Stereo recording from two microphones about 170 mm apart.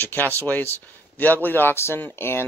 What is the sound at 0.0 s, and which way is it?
Speech, 10° left (ahead or behind).